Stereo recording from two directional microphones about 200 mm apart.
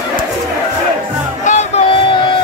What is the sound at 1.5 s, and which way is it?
Crowd, 35° left (ahead or behind).